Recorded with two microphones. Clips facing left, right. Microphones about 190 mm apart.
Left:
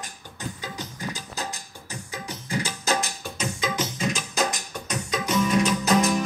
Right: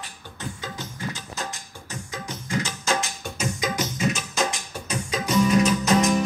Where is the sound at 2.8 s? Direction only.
40° left (ahead or behind).